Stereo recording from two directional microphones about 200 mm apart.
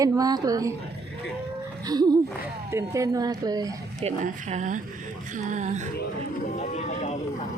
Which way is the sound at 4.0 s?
35° right (ahead or behind).